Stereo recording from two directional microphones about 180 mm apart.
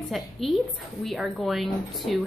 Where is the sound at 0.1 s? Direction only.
Centre (ahead or behind).